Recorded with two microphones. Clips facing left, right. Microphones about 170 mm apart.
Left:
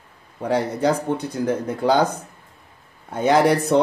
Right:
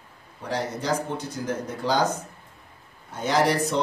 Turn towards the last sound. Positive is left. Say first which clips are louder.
# left 6 dB
turn(degrees=55)  # may be behind; listen again after turning